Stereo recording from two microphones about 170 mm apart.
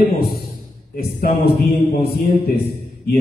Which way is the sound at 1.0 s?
60° left (ahead or behind).